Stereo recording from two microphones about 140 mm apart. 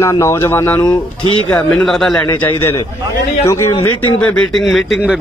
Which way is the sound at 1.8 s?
5° left (ahead or behind).